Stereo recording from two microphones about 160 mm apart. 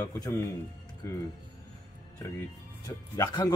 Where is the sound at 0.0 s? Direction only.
15° left (ahead or behind).